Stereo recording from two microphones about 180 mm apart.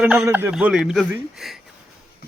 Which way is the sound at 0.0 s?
5° right (ahead or behind).